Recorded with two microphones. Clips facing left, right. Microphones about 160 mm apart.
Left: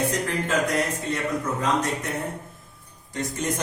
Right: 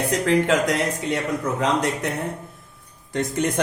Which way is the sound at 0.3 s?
80° right.